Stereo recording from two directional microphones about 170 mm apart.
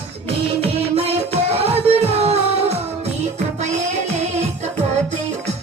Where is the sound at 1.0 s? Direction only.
35° right (ahead or behind).